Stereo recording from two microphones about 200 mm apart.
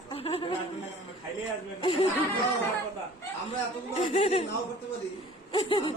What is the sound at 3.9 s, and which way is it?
Speech, 30° left (ahead or behind).